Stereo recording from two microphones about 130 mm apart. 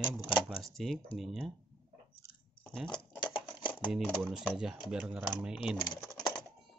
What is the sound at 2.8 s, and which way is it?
Typewriter, 35° left (ahead or behind).